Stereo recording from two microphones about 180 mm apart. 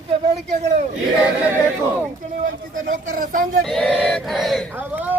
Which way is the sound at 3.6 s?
Centre (ahead or behind).